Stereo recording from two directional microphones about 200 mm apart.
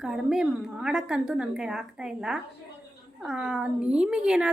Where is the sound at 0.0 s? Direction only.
5° right (ahead or behind).